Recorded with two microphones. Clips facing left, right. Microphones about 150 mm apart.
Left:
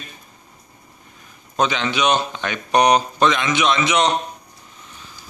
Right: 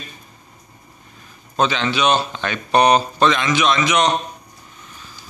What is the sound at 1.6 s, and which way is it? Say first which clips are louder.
Speech: right 1 dB; 15° left (ahead or behind).